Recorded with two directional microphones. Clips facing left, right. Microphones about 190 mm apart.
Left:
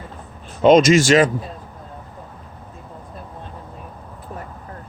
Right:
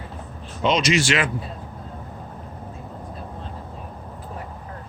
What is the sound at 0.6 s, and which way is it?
Speech, 50° left (ahead or behind).